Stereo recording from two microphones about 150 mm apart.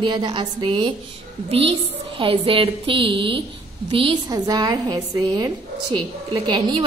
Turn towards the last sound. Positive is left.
turn(degrees=-30)  # may be behind; listen again after turning